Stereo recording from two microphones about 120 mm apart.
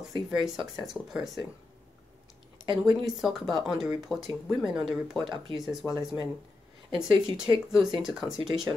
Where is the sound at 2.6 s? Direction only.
40° right (ahead or behind).